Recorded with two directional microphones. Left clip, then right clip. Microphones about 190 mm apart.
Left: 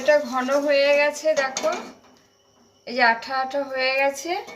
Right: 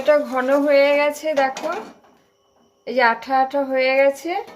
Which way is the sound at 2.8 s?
45° right (ahead or behind).